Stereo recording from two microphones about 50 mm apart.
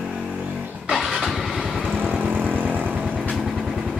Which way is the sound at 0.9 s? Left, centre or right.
Centre.